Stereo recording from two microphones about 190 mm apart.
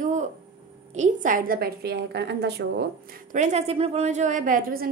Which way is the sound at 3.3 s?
35° right (ahead or behind).